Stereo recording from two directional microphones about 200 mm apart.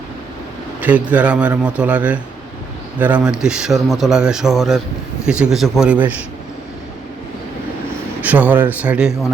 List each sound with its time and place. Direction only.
0.8 s a man's voice: 10° right (ahead or behind)
8.2 s a man's voice: 10° right (ahead or behind)